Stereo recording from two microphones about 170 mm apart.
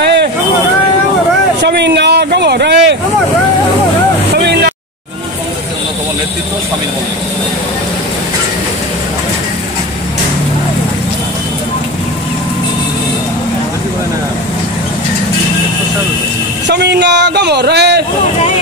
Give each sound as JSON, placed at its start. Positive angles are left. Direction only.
{"t": 0.0, "sound": "vehicle", "side_deg": -75}
{"t": 1.6, "sound": "speech", "side_deg": -80}
{"t": 4.4, "sound": "vehicle", "side_deg": -75}
{"t": 16.6, "sound": "speech", "side_deg": -85}